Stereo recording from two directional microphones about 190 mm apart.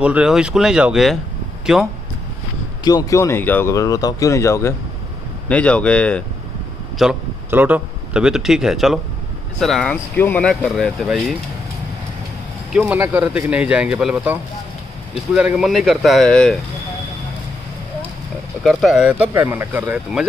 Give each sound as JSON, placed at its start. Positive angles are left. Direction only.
{"t": 0.0, "sound": "speech", "side_deg": -5}
{"t": 2.8, "sound": "speech", "side_deg": 20}
{"t": 7.0, "sound": "a man's voice", "side_deg": -5}
{"t": 12.7, "sound": "speech", "side_deg": -10}
{"t": 18.6, "sound": "speech", "side_deg": 0}